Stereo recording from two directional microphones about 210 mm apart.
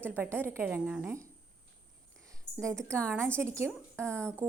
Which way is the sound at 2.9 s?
10° right (ahead or behind).